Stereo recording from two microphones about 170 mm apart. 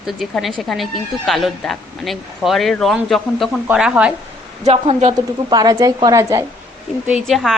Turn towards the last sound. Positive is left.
turn(degrees=0)  # may be behind; listen again after turning